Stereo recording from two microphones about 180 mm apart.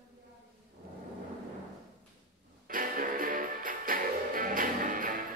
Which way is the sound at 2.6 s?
50° right (ahead or behind).